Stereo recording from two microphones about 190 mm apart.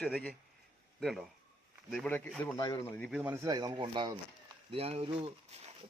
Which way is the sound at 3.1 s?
10° right (ahead or behind).